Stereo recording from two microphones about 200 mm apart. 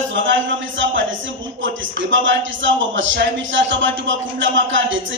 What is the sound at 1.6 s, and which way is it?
A man's voice, 70° right (ahead or behind).